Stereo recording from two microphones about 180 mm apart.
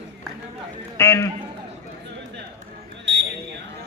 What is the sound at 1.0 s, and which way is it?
Speech, 15° left (ahead or behind).